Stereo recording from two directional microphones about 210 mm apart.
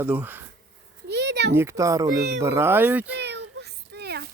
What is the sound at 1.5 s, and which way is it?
Speech, 10° right (ahead or behind).